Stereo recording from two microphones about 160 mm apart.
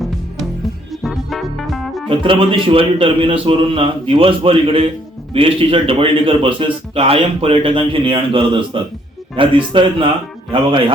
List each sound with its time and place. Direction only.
1.0 s music: centre (ahead or behind)
2.0 s a man's voice: 35° right (ahead or behind)